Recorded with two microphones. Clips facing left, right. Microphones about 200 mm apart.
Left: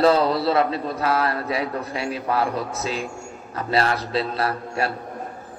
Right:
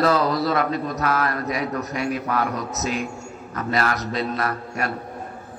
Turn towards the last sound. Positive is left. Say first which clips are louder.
# left 2 dB
turn(degrees=30)  # may be behind; listen again after turning